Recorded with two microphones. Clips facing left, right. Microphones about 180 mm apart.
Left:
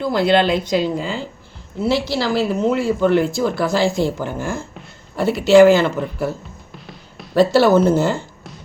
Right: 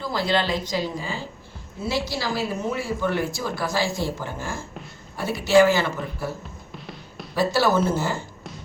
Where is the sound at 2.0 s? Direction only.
70° left (ahead or behind).